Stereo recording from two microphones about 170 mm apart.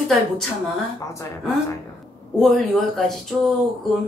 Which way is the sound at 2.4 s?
Centre (ahead or behind).